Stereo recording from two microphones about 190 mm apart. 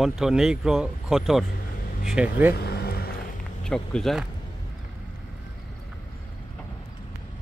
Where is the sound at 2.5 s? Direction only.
55° left (ahead or behind).